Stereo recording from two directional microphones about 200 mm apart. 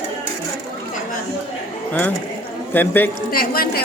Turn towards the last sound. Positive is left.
turn(degrees=50)  # may be behind; listen again after turning